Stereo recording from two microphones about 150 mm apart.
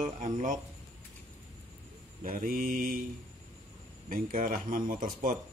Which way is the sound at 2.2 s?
70° right (ahead or behind).